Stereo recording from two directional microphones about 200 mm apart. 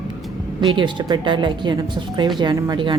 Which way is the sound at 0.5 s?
25° right (ahead or behind).